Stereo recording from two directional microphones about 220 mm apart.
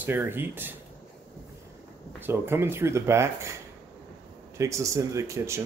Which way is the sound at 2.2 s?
10° right (ahead or behind).